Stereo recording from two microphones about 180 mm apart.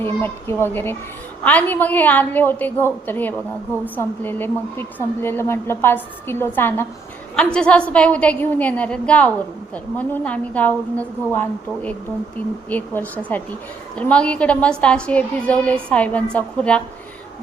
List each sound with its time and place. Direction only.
0.0 s a woman's voice: 15° left (ahead or behind)